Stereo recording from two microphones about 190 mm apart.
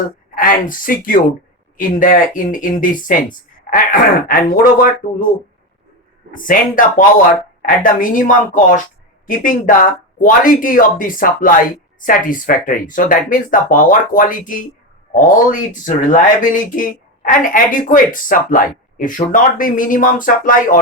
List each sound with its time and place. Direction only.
0.3 s speech: 45° left (ahead or behind)
6.3 s speech: 45° left (ahead or behind)